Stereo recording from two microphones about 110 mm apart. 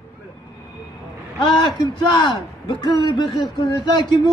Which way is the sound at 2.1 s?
45° left (ahead or behind).